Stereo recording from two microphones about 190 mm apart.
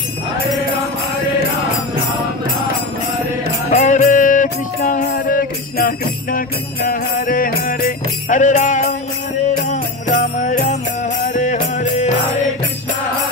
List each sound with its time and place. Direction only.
3.7 s music: 40° left (ahead or behind)
10.4 s music: 40° left (ahead or behind)